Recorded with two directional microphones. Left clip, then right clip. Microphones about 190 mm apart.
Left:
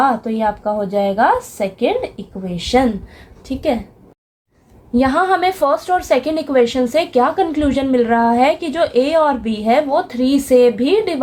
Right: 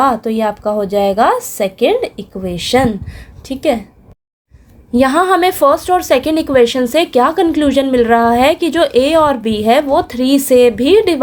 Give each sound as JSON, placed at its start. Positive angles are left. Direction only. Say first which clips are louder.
{"t": 0.0, "sound": "a woman's voice", "louder": "right 2 dB", "side_deg": -50}
{"t": 4.9, "sound": "a woman's voice", "louder": "right 4 dB", "side_deg": -40}